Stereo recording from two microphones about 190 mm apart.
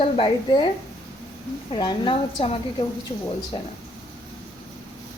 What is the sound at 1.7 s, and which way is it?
Speech, 30° left (ahead or behind).